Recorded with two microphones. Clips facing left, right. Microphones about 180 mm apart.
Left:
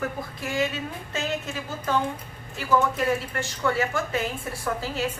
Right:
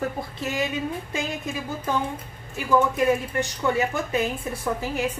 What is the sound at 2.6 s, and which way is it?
Speech, 15° right (ahead or behind).